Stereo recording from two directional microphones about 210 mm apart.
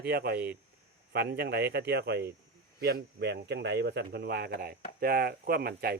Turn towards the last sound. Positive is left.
turn(degrees=-45)  # may be behind; listen again after turning